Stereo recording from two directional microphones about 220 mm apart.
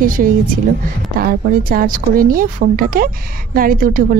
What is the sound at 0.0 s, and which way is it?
Speech, 40° right (ahead or behind).